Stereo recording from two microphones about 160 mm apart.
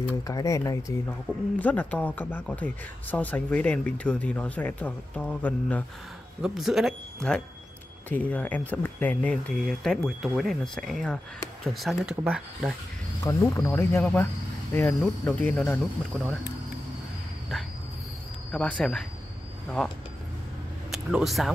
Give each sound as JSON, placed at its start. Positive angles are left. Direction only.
{"t": 0.3, "sound": "speech", "side_deg": 20}
{"t": 6.4, "sound": "speech", "side_deg": 0}
{"t": 13.2, "sound": "speech", "side_deg": 15}
{"t": 18.5, "sound": "speech", "side_deg": 5}